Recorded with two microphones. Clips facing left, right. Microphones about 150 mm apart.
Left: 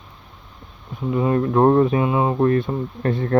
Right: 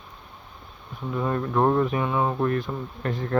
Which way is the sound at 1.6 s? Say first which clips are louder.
Left 6 dB; 40° left (ahead or behind).